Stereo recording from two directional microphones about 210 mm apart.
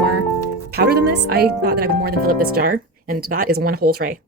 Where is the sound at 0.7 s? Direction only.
50° right (ahead or behind).